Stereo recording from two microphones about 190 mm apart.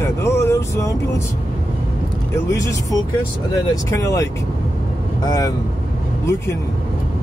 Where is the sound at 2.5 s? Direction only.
15° left (ahead or behind).